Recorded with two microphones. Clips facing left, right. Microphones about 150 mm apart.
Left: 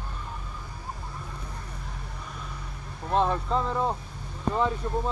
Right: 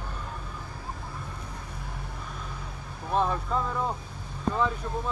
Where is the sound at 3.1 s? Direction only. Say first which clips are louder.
Left 2 dB; 20° left (ahead or behind).